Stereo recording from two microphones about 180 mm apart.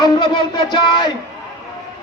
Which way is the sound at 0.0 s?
25° left (ahead or behind).